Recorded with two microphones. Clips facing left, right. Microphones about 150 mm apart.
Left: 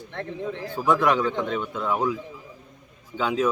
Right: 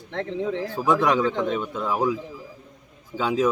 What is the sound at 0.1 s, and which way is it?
Speech, 70° right (ahead or behind).